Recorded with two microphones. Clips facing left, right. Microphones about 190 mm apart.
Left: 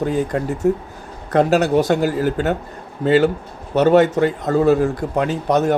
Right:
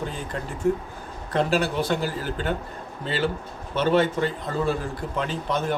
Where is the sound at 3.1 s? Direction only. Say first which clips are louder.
Left 12 dB; 45° left (ahead or behind).